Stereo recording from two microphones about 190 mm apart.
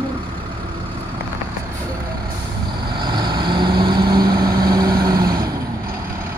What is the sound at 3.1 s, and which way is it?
Vehicle, 25° right (ahead or behind).